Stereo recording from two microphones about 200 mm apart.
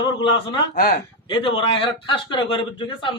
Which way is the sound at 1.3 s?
25° left (ahead or behind).